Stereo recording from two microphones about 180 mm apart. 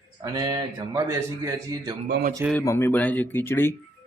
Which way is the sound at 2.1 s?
60° right (ahead or behind).